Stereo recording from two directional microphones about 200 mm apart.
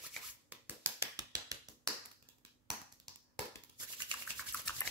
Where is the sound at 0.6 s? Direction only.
15° right (ahead or behind).